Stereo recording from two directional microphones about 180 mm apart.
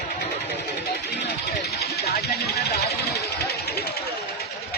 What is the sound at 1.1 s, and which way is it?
Speech, 70° left (ahead or behind).